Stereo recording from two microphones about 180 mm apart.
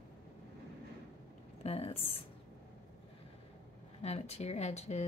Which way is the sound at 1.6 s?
35° left (ahead or behind).